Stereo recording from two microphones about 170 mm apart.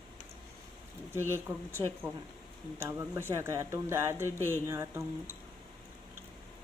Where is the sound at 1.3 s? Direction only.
15° right (ahead or behind).